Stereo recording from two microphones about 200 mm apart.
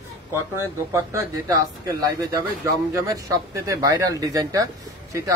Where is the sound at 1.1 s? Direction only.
15° right (ahead or behind).